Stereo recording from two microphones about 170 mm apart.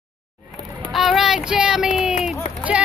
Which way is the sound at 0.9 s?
Centre (ahead or behind).